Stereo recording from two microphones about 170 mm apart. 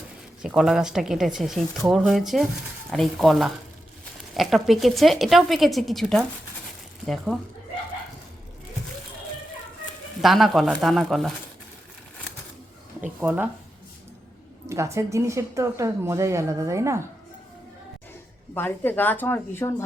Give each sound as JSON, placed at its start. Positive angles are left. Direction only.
{"t": 0.4, "sound": "a woman's voice", "side_deg": 0}
{"t": 10.2, "sound": "a woman's voice", "side_deg": 0}
{"t": 13.0, "sound": "speech", "side_deg": -10}
{"t": 14.7, "sound": "speech", "side_deg": -15}
{"t": 18.5, "sound": "speech", "side_deg": 10}